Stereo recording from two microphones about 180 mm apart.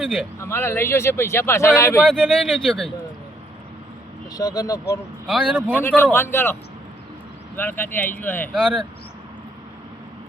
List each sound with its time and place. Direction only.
0.0 s speech: centre (ahead or behind)
0.3 s speech: 15° left (ahead or behind)
2.0 s speech: 5° left (ahead or behind)
4.4 s speech: 20° left (ahead or behind)
5.5 s a man's voice: 10° right (ahead or behind)
6.1 s speech: 15° left (ahead or behind)